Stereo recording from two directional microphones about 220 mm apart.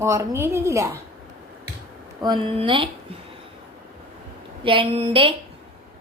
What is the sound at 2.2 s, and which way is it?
Speech, 20° right (ahead or behind).